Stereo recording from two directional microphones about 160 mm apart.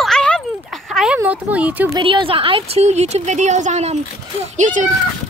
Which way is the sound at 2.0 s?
30° right (ahead or behind).